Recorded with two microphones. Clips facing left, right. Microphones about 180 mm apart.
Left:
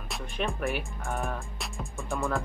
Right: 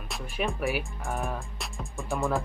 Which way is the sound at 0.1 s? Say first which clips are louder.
Right 1 dB; 5° right (ahead or behind).